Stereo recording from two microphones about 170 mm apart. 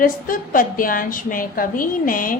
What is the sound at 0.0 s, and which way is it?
A woman's voice, 55° left (ahead or behind).